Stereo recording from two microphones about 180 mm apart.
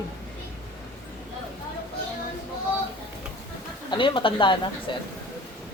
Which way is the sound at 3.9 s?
25° left (ahead or behind).